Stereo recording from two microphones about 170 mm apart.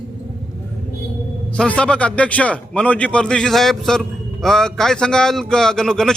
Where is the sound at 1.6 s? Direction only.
5° left (ahead or behind).